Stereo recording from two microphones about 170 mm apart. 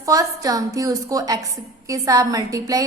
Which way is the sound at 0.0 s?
20° right (ahead or behind).